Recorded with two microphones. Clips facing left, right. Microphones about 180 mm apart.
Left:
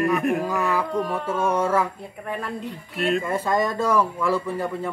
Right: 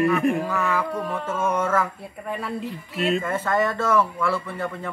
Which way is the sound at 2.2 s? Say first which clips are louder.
Right 1 dB; 5° right (ahead or behind).